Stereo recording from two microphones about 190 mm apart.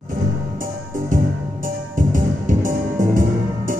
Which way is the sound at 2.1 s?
45° right (ahead or behind).